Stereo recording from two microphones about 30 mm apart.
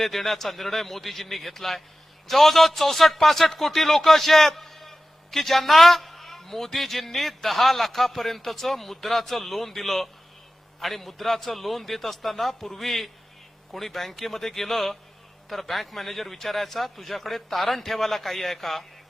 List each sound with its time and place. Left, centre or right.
0.0 s a man's voice: centre